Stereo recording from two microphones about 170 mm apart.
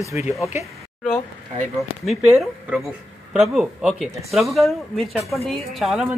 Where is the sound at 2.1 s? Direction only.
Centre (ahead or behind).